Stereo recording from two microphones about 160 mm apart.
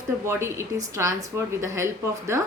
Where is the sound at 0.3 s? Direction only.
15° right (ahead or behind).